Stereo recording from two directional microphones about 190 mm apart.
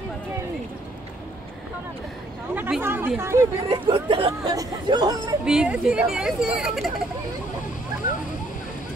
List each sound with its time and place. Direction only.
2.5 s speech: 10° right (ahead or behind)
3.6 s speech: 30° right (ahead or behind)
5.4 s speech: 5° right (ahead or behind)